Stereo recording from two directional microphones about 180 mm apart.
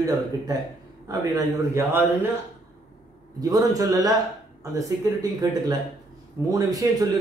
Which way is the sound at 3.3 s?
20° right (ahead or behind).